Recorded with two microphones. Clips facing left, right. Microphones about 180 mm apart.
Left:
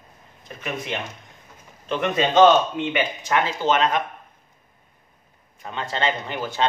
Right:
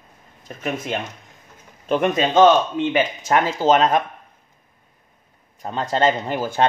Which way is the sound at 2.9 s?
45° right (ahead or behind).